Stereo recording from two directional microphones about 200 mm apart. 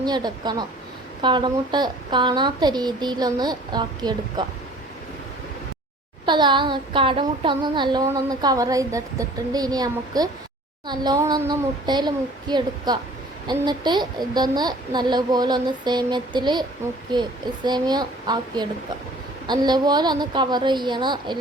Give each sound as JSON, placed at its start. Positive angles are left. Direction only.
{"t": 0.0, "sound": "speech", "side_deg": -20}
{"t": 6.2, "sound": "speech", "side_deg": -20}